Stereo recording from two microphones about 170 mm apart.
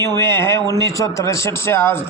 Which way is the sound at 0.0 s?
15° left (ahead or behind).